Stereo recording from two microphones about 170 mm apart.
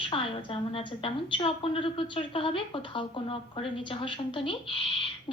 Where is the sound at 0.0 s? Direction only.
30° left (ahead or behind).